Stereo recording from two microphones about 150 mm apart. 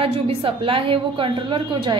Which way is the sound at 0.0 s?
40° right (ahead or behind).